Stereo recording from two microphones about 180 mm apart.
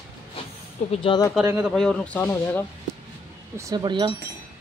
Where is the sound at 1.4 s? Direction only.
15° right (ahead or behind).